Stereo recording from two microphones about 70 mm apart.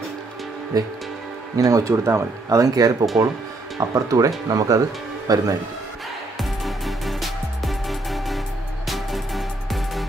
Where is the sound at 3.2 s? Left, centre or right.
Right.